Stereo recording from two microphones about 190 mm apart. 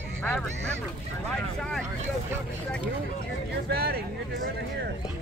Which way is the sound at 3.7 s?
55° right (ahead or behind).